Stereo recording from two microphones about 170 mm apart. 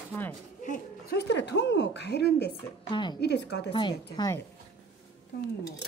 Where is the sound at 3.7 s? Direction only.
25° left (ahead or behind).